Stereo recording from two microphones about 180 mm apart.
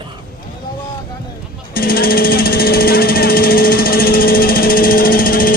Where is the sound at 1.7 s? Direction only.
55° left (ahead or behind).